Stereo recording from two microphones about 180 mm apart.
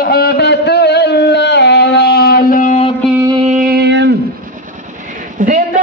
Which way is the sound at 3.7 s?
70° right (ahead or behind).